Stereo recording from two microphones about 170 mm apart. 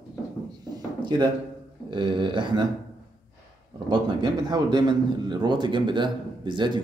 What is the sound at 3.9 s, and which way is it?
A man's voice, 25° right (ahead or behind).